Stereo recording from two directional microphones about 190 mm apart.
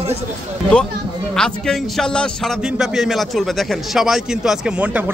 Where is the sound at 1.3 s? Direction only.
5° left (ahead or behind).